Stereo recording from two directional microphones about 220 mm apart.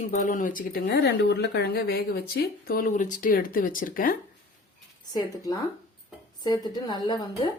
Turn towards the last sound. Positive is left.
turn(degrees=20)  # may be behind; listen again after turning